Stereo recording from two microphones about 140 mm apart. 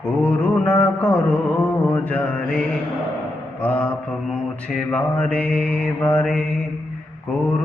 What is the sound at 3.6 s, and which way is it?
Mantra, 10° left (ahead or behind).